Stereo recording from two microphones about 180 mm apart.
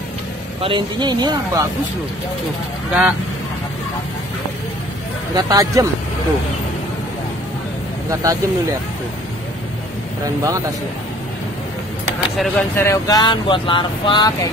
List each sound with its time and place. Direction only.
0.6 s speech: 30° right (ahead or behind)
2.9 s speech: 10° right (ahead or behind)
5.3 s speech: 20° right (ahead or behind)
8.1 s speech: 15° right (ahead or behind)
10.2 s speech: 15° right (ahead or behind)
12.4 s speech: 10° left (ahead or behind)